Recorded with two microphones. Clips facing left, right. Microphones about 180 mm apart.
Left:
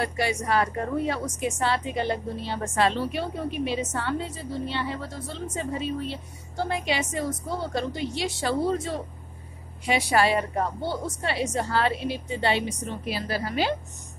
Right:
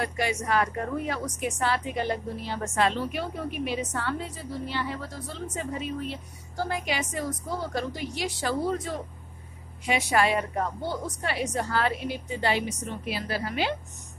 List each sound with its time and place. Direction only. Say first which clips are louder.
0.0 s a woman's voice: left 2 dB; 30° left (ahead or behind)